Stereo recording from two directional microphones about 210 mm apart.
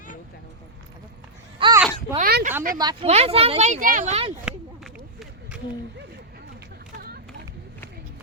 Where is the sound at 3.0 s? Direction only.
30° right (ahead or behind).